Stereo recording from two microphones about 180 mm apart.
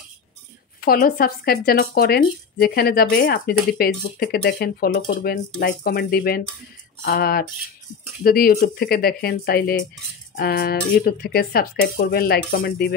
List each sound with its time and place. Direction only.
0.7 s speech: 55° left (ahead or behind)